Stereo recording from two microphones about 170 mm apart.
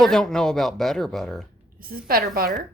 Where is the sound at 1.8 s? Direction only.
60° right (ahead or behind).